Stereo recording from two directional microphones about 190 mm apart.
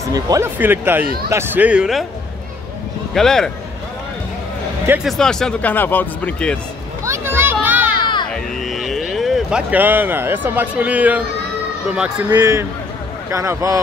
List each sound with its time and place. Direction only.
0.1 s speech: 15° right (ahead or behind)
3.2 s speech: centre (ahead or behind)
4.8 s speech: 5° right (ahead or behind)
7.1 s children playing: 10° right (ahead or behind)
8.3 s music: centre (ahead or behind)
11.9 s speech: 5° right (ahead or behind)
12.4 s speech: 15° right (ahead or behind)